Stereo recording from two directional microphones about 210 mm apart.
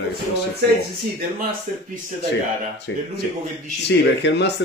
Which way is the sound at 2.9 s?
60° left (ahead or behind).